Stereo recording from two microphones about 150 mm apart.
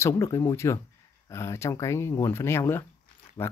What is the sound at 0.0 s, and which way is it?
Speech, 20° left (ahead or behind).